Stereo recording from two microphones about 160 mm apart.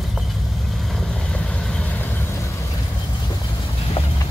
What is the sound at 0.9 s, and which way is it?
Vehicle, 5° left (ahead or behind).